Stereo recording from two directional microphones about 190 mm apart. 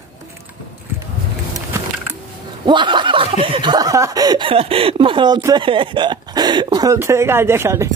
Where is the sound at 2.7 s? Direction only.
25° right (ahead or behind).